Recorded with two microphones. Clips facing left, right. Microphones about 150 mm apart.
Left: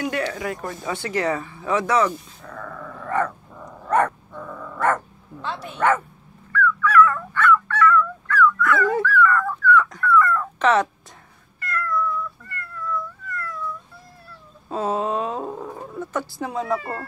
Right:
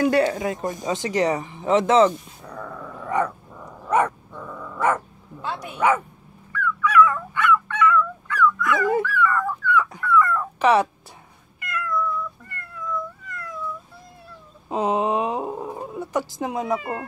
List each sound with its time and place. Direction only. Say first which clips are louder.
0.0 s speech: right 6 dB; 35° right (ahead or behind)
0.4 s speech: right 3 dB; 20° right (ahead or behind)
3.8 s dog: left 1 dB; 10° right (ahead or behind)
4.7 s speech: even; 10° right (ahead or behind)
6.5 s dog: left 2 dB; 15° right (ahead or behind)
11.6 s cat: left 1 dB; 15° right (ahead or behind)
14.7 s roaring cats: right 2 dB; 15° right (ahead or behind)